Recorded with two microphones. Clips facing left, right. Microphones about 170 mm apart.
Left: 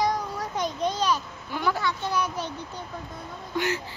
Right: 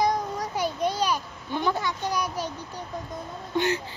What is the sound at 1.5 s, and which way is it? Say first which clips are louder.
A child's voice: right 1 dB; 20° right (ahead or behind).